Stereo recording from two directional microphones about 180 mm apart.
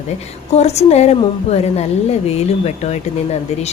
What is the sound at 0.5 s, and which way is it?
A woman's voice, 35° left (ahead or behind).